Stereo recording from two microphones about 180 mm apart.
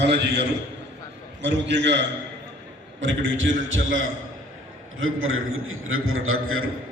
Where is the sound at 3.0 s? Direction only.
90° right.